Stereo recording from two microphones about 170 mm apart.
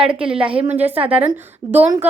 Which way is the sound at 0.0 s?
5° right (ahead or behind).